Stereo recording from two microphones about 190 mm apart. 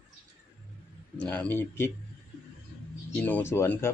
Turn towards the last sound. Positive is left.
turn(degrees=10)  # may be behind; listen again after turning